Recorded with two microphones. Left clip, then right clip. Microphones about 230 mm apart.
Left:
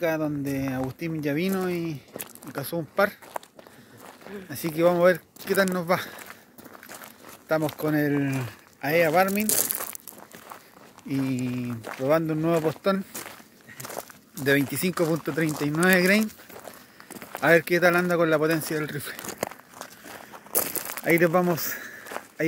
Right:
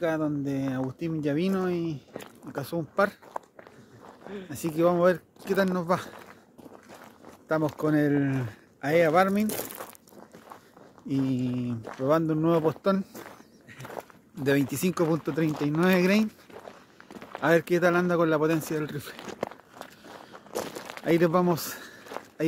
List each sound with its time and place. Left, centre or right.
0.0 s speech: centre
4.5 s speech: centre
7.5 s speech: centre
9.5 s crumpling: left
11.1 s speech: centre
14.7 s speech: centre
17.1 s a sound: left
17.4 s speech: centre
19.2 s crumpling: left
20.5 s crumpling: left
21.0 s speech: centre